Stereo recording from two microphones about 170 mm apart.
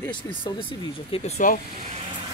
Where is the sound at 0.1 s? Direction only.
30° left (ahead or behind); by 1.6 s 45° left (ahead or behind).